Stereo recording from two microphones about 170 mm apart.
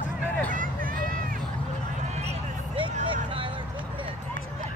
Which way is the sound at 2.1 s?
35° right (ahead or behind).